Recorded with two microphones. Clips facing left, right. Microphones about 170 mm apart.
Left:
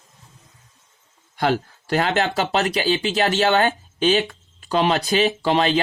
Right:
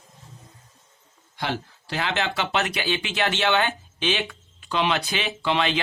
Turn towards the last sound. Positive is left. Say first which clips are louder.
# left 5 dB
turn(degrees=40)  # may be behind; listen again after turning